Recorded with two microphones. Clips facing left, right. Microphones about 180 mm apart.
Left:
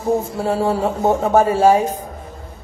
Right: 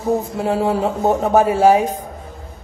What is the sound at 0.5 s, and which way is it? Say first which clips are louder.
A woman's voice: even; 20° right (ahead or behind).